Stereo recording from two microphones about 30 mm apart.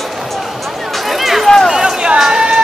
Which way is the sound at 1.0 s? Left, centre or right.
Centre.